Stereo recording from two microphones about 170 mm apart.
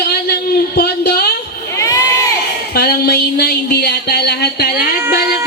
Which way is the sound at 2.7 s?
70° left (ahead or behind).